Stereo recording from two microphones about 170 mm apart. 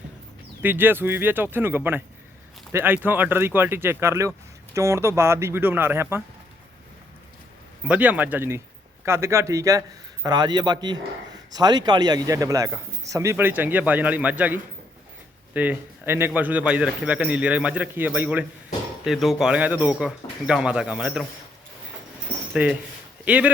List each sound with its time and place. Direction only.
0.6 s speech: 10° right (ahead or behind)
7.9 s a man's voice: 10° right (ahead or behind)
22.5 s speech: 5° right (ahead or behind)